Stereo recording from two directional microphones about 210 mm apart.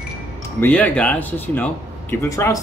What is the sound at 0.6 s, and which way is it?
A man's voice, 5° left (ahead or behind).